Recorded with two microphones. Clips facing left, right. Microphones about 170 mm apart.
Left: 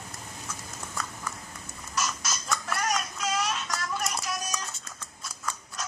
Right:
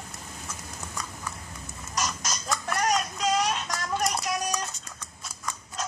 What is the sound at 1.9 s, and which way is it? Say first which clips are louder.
Duck: right 1 dB; 35° right (ahead or behind).